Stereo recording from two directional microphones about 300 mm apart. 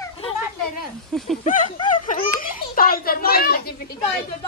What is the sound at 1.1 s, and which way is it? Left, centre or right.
Speech, centre.